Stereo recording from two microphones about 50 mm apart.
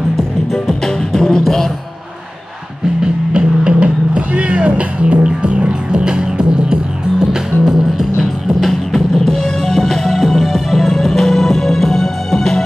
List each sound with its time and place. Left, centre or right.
0.5 s music: centre
3.0 s music: centre
7.6 s music: centre